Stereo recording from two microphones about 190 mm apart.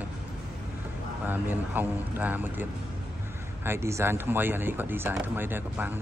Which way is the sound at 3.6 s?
15° right (ahead or behind).